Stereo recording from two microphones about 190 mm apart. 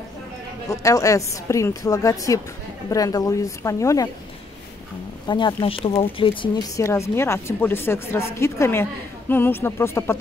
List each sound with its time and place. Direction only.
0.7 s speech: 15° left (ahead or behind)
5.3 s speech: 25° left (ahead or behind)
6.8 s speech: 15° left (ahead or behind)